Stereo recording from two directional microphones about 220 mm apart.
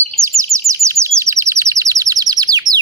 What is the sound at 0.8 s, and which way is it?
Chirp, 15° right (ahead or behind).